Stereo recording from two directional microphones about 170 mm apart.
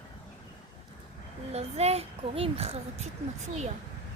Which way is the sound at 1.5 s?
40° right (ahead or behind).